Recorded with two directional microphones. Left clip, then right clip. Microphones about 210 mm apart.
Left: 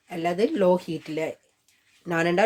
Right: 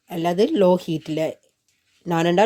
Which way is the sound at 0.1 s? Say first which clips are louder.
Right 4 dB; 40° right (ahead or behind).